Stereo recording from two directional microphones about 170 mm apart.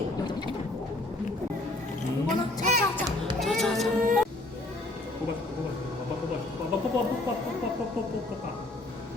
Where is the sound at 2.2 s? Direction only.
50° right (ahead or behind).